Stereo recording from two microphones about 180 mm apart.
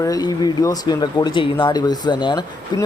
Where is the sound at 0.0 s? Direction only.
20° left (ahead or behind).